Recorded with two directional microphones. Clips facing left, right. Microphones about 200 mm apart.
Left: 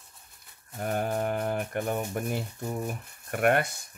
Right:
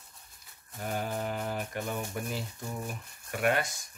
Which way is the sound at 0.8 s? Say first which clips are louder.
Left 5 dB; 50° left (ahead or behind).